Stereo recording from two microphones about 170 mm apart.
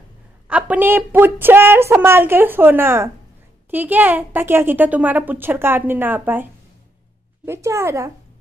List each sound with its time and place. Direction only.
0.5 s a woman's voice: 10° right (ahead or behind)
7.4 s a woman's voice: 15° right (ahead or behind)